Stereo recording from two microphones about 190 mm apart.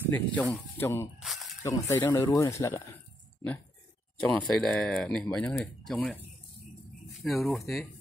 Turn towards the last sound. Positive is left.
turn(degrees=0)  # may be behind; listen again after turning